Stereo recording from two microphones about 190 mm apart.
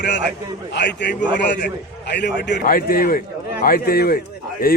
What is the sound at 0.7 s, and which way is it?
A man's voice, 65° left (ahead or behind).